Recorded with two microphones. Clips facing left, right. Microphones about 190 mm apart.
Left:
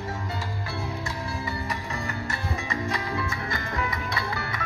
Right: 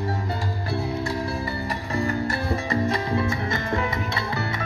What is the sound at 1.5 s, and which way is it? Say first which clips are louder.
Music: right 3 dB; 35° right (ahead or behind).